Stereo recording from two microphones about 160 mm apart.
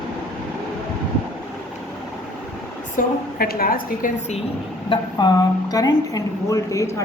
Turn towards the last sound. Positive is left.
turn(degrees=20)  # may be behind; listen again after turning